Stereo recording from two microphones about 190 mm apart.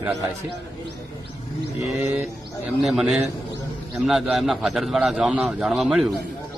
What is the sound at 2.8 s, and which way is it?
A man's voice, centre (ahead or behind).